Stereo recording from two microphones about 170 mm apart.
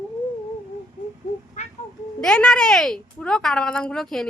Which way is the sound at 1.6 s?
45° left (ahead or behind).